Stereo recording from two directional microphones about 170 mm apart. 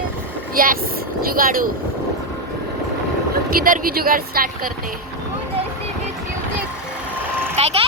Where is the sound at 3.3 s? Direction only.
55° right (ahead or behind).